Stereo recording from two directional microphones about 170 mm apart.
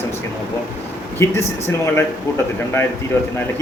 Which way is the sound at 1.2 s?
15° left (ahead or behind).